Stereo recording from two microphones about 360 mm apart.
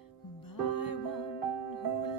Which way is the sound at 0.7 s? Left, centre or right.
Left.